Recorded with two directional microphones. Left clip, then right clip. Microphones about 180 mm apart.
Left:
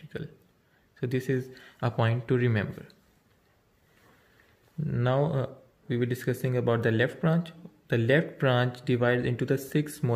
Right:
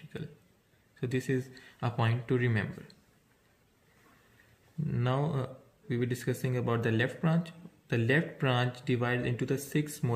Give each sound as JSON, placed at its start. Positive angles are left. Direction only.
{"t": 0.1, "sound": "a man's voice", "side_deg": 30}
{"t": 4.8, "sound": "speech", "side_deg": 30}